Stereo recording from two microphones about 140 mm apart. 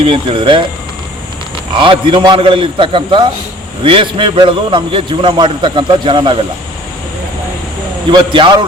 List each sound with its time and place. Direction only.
0.0 s a man's voice: 40° right (ahead or behind)
1.7 s a man's voice: 35° right (ahead or behind)
8.1 s a man's voice: 35° right (ahead or behind)